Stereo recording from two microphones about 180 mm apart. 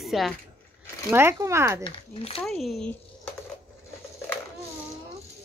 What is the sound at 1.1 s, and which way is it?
Speech, 15° right (ahead or behind).